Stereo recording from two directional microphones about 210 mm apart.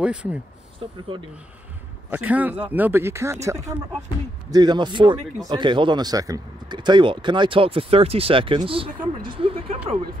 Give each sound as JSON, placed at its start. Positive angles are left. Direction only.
{"t": 0.0, "sound": "speech", "side_deg": -5}
{"t": 2.0, "sound": "speech", "side_deg": -10}